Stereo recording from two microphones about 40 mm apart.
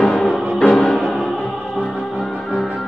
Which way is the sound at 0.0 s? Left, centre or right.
Centre.